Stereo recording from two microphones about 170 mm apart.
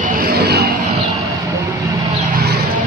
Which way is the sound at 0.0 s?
60° right (ahead or behind).